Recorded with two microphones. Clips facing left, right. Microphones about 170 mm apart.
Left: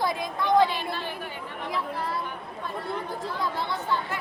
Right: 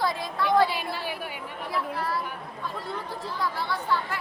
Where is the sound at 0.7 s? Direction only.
10° right (ahead or behind).